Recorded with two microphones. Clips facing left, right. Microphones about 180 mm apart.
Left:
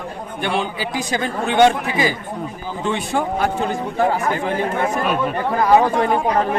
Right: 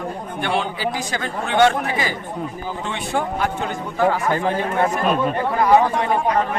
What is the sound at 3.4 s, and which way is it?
Speech, 35° left (ahead or behind).